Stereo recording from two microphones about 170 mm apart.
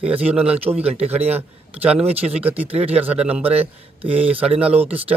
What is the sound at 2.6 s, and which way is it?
A man's voice, 35° right (ahead or behind).